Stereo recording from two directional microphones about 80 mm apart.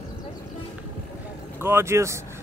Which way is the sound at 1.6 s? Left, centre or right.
Right.